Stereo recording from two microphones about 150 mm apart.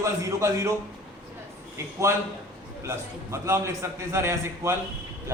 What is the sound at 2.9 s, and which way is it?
A man's voice, 15° right (ahead or behind).